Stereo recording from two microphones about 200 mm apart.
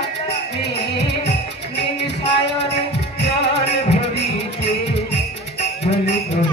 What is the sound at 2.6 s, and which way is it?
Music, 60° left (ahead or behind).